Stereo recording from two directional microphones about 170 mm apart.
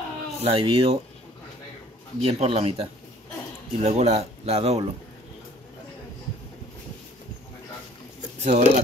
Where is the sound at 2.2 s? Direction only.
35° right (ahead or behind).